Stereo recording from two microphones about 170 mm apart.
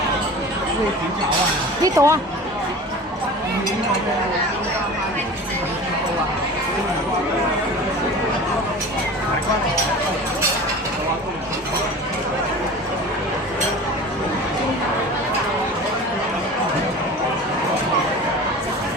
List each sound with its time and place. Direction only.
1.8 s speech: 20° right (ahead or behind)